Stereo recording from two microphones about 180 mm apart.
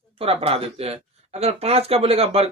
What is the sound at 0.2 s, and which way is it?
Speech, 30° right (ahead or behind).